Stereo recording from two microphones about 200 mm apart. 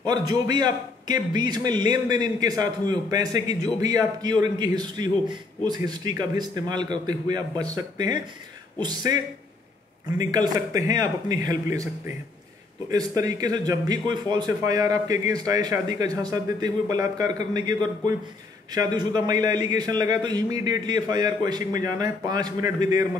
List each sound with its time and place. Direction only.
0.0 s a man's voice: 20° right (ahead or behind)
12.9 s a man's voice: 20° right (ahead or behind)